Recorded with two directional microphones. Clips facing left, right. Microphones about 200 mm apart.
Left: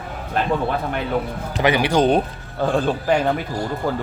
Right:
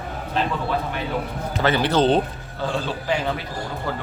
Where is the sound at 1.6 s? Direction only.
15° left (ahead or behind).